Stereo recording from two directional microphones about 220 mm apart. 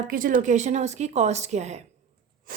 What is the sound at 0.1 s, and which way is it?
Speech, 40° right (ahead or behind).